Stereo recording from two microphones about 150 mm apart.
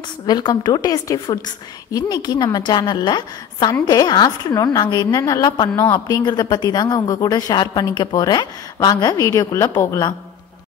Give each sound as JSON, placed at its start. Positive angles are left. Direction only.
{"t": 0.3, "sound": "speech", "side_deg": 25}